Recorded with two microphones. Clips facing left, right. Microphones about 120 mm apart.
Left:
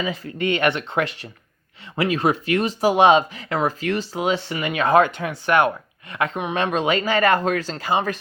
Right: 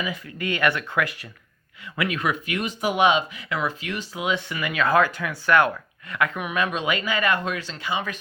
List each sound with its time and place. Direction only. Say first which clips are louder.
0.0 s speech: left 5 dB; 30° left (ahead or behind)